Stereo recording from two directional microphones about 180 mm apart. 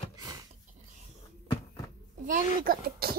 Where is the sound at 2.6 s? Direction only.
55° right (ahead or behind).